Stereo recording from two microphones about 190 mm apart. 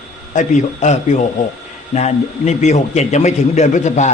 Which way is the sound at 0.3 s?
40° left (ahead or behind).